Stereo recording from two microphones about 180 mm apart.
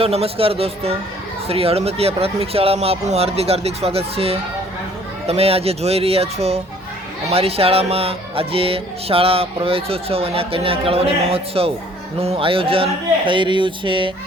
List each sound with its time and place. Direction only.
0.0 s speech: 35° right (ahead or behind)